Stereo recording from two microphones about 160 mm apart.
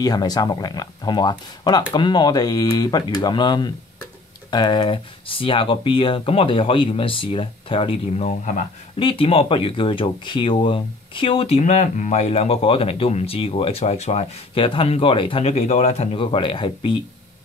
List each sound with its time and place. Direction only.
0.0 s speech: 25° left (ahead or behind); by 8.5 s 45° left (ahead or behind)
9.0 s speech: 35° left (ahead or behind)